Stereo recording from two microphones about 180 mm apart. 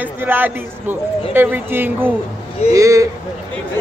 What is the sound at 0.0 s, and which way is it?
Speech, 10° right (ahead or behind).